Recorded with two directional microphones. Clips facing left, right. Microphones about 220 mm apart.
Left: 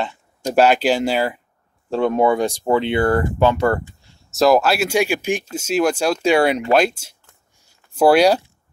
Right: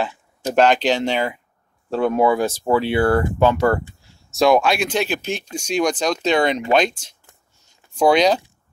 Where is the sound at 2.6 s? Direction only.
20° left (ahead or behind).